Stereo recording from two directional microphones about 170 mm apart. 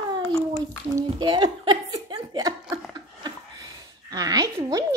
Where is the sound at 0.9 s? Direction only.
25° right (ahead or behind).